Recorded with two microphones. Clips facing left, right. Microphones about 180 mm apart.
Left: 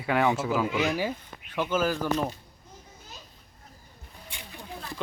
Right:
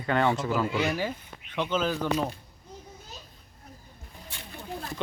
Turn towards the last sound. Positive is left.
turn(degrees=15)  # may be behind; listen again after turning